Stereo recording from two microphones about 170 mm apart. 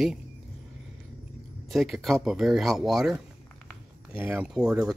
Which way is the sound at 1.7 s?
Centre (ahead or behind).